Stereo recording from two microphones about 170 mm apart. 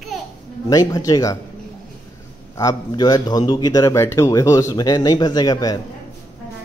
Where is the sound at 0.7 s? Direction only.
20° left (ahead or behind).